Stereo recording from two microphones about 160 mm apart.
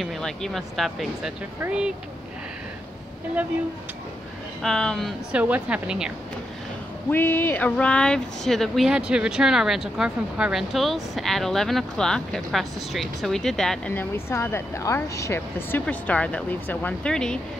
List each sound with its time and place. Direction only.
0.0 s a woman's voice: centre (ahead or behind)
4.6 s speech: 5° left (ahead or behind)
5.3 s a woman's voice: 10° right (ahead or behind)
7.1 s speech: 10° left (ahead or behind)